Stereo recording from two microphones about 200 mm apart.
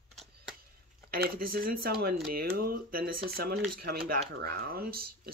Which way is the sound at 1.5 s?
45° right (ahead or behind).